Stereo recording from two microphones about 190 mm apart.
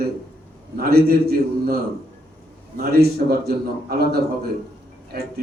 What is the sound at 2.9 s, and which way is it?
Speech, 55° right (ahead or behind).